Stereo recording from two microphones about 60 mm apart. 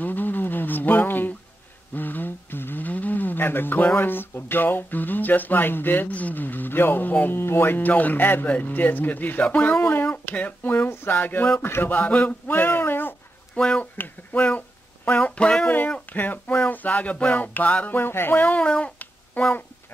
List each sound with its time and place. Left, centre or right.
0.0 s a sound: left
2.0 s speech: left
9.4 s music: left
10.0 s speech: left
13.6 s speech: centre
13.9 s speech: left
16.1 s music: left